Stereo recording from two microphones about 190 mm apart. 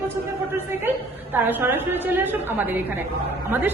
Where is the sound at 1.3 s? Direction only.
10° right (ahead or behind).